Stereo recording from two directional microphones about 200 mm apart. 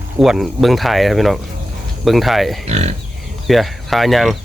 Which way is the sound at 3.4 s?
Centre (ahead or behind).